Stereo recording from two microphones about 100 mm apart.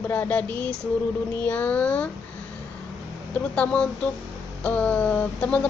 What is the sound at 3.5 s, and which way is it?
A woman's voice, 10° left (ahead or behind).